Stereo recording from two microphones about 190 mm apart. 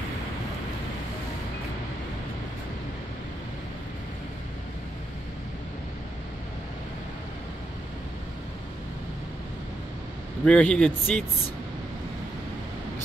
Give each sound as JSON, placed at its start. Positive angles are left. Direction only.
{"t": 10.4, "sound": "speech", "side_deg": 5}